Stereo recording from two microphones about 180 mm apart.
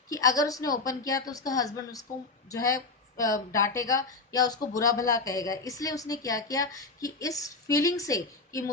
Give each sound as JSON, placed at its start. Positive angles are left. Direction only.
{"t": 0.1, "sound": "a woman's voice", "side_deg": 20}